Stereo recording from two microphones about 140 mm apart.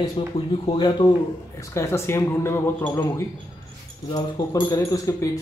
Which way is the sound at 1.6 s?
20° left (ahead or behind).